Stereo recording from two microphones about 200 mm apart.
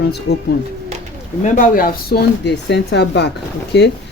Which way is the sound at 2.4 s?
60° left (ahead or behind).